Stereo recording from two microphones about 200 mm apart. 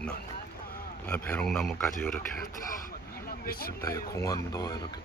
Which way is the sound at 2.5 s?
45° left (ahead or behind).